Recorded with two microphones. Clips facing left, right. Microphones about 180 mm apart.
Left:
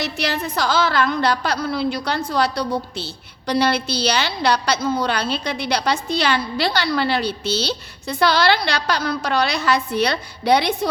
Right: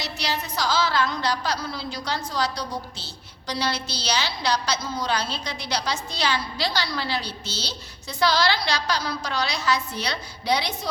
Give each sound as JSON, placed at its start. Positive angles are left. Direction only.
{"t": 0.0, "sound": "a woman's voice", "side_deg": 55}